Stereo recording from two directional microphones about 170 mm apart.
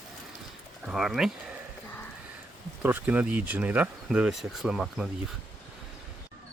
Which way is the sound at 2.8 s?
10° right (ahead or behind).